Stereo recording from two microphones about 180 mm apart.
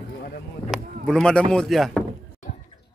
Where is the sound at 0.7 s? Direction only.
5° left (ahead or behind).